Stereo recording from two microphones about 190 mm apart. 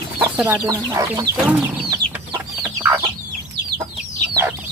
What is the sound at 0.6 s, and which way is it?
Speech, 15° right (ahead or behind).